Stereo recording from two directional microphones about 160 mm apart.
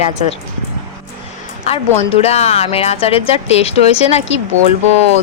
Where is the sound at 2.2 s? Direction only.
40° left (ahead or behind).